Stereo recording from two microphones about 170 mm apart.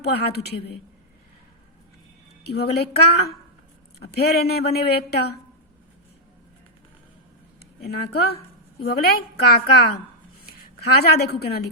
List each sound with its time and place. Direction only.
0.0 s speech: 70° left (ahead or behind)
2.4 s speech: 70° left (ahead or behind)
7.9 s a woman's voice: 70° left (ahead or behind)